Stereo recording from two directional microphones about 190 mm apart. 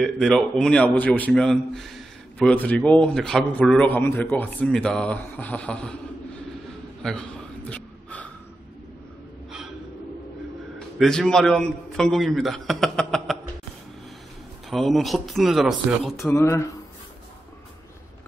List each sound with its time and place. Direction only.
0.0 s a man's voice: centre (ahead or behind)
7.0 s gasp: 5° left (ahead or behind)
11.0 s a man's voice: 5° left (ahead or behind)
14.7 s a man's voice: centre (ahead or behind)
16.3 s speech: 15° left (ahead or behind)